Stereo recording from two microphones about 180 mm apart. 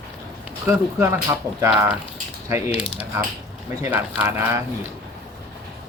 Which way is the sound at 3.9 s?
10° right (ahead or behind).